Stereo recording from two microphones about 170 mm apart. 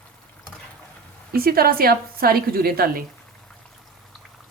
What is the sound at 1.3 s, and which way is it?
A woman's voice, 60° right (ahead or behind).